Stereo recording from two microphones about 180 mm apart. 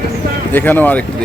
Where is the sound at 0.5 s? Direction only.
10° left (ahead or behind).